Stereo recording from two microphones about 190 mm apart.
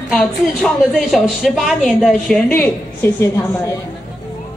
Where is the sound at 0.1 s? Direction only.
5° left (ahead or behind).